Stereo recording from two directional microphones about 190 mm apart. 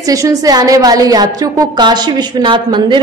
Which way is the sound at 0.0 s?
15° right (ahead or behind).